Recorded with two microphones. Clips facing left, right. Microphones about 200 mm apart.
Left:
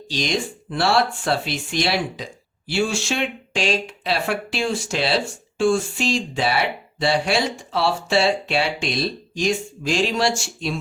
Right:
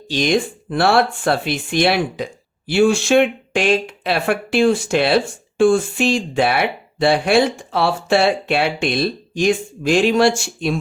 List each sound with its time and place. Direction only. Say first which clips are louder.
0.1 s speech: right 7 dB; 55° right (ahead or behind)